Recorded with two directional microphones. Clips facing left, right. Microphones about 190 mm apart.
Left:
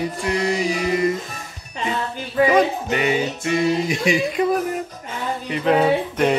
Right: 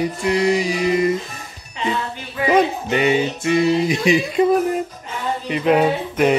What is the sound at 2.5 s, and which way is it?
Music, 25° right (ahead or behind).